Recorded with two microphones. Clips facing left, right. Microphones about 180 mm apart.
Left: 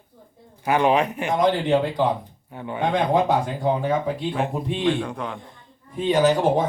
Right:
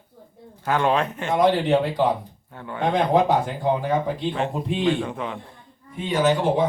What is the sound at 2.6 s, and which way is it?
Speech, 15° left (ahead or behind).